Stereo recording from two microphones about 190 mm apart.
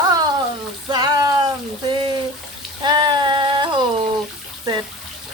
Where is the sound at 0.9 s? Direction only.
20° right (ahead or behind).